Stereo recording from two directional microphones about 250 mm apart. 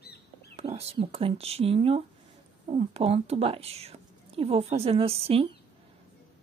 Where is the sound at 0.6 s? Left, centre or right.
Right.